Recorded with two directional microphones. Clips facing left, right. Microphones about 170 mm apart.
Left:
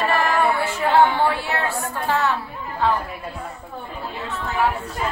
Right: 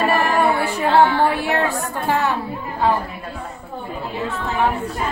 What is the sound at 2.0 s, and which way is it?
Speech, 15° right (ahead or behind).